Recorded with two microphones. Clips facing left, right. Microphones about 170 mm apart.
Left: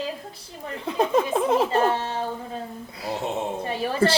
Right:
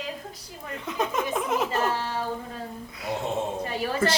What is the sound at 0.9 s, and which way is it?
Speech, 30° left (ahead or behind).